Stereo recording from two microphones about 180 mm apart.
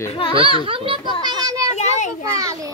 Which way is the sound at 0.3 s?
30° right (ahead or behind).